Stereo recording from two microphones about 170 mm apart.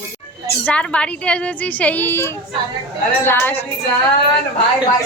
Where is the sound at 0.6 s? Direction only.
5° left (ahead or behind).